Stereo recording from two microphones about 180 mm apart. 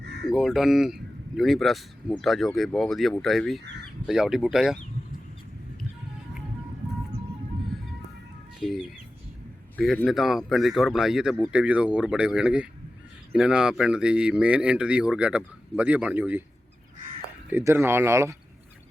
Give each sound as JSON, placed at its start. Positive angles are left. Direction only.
{"t": 0.0, "sound": "crow", "side_deg": -70}
{"t": 0.3, "sound": "speech", "side_deg": 0}
{"t": 8.6, "sound": "a man's voice", "side_deg": 0}
{"t": 17.5, "sound": "speech", "side_deg": -15}